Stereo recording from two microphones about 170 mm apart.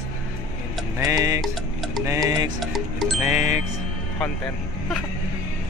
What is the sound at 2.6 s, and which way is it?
Speech, centre (ahead or behind).